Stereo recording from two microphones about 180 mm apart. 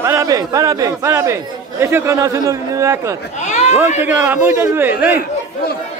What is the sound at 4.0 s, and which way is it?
A man's voice, 10° right (ahead or behind).